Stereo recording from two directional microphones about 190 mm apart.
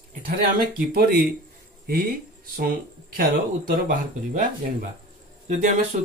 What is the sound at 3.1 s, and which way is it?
Speech, 50° right (ahead or behind).